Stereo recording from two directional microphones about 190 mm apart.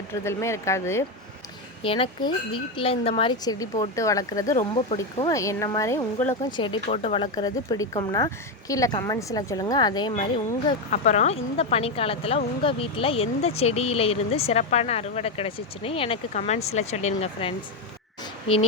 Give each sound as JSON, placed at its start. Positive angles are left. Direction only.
{"t": 0.1, "sound": "speech", "side_deg": 15}
{"t": 1.8, "sound": "speech", "side_deg": 30}
{"t": 6.6, "sound": "speech", "side_deg": 30}
{"t": 10.9, "sound": "speech", "side_deg": 40}